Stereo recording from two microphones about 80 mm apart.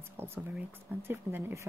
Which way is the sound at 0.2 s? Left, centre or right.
Right.